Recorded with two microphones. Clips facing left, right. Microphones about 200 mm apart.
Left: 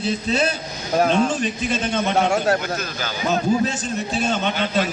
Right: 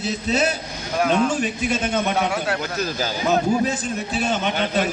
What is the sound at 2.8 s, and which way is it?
Speech, 35° right (ahead or behind).